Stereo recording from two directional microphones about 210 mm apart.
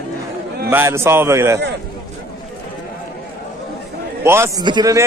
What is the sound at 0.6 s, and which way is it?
Speech, 10° right (ahead or behind).